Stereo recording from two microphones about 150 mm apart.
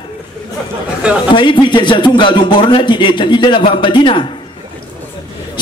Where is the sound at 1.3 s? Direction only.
35° left (ahead or behind).